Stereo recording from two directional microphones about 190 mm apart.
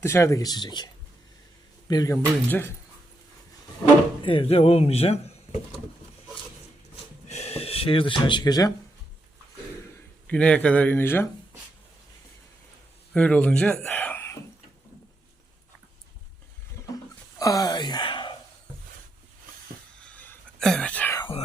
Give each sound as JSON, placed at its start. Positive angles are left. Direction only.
{"t": 0.0, "sound": "speech", "side_deg": 15}
{"t": 1.9, "sound": "speech", "side_deg": 20}
{"t": 4.2, "sound": "speech", "side_deg": 25}
{"t": 6.9, "sound": "a sound", "side_deg": 35}
{"t": 10.2, "sound": "speech", "side_deg": 5}
{"t": 13.1, "sound": "speech", "side_deg": 5}
{"t": 17.3, "sound": "speech", "side_deg": 20}
{"t": 20.1, "sound": "whispering", "side_deg": 10}
{"t": 21.2, "sound": "whispering", "side_deg": 30}